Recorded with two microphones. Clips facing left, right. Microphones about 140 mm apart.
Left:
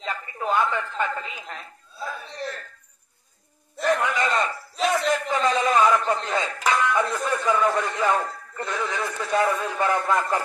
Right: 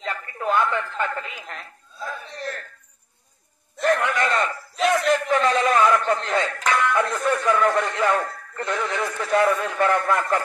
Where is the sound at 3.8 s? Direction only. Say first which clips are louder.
Right 2 dB; 10° left (ahead or behind).